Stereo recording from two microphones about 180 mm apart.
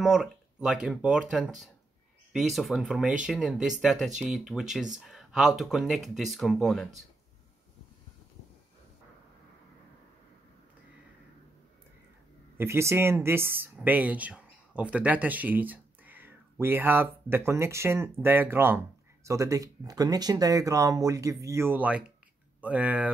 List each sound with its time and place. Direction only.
0.0 s speech: 5° right (ahead or behind)
12.5 s speech: 15° right (ahead or behind)